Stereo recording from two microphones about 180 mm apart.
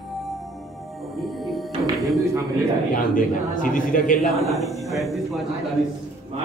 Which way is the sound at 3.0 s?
50° left (ahead or behind).